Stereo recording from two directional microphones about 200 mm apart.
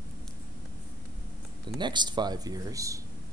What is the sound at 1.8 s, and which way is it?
Speech, 20° right (ahead or behind).